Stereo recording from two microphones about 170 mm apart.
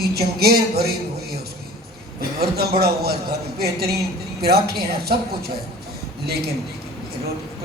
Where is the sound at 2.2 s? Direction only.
65° right (ahead or behind).